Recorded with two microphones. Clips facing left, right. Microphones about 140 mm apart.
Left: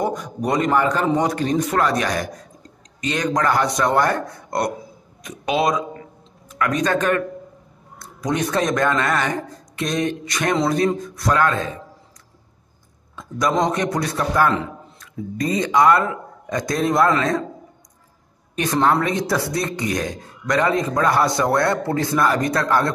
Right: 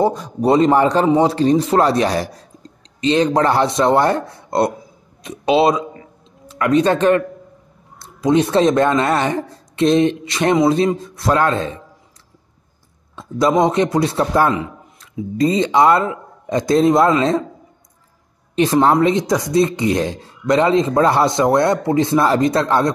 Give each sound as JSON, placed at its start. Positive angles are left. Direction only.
{"t": 0.0, "sound": "a man's voice", "side_deg": -30}
{"t": 13.1, "sound": "a sound", "side_deg": -25}
{"t": 13.5, "sound": "speech", "side_deg": -25}
{"t": 18.6, "sound": "speech", "side_deg": -25}